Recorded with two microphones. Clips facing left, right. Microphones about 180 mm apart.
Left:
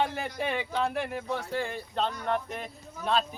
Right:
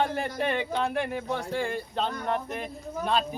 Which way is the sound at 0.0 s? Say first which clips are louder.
Right 3 dB; centre (ahead or behind).